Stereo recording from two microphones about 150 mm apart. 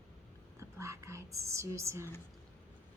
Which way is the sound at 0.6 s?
20° right (ahead or behind).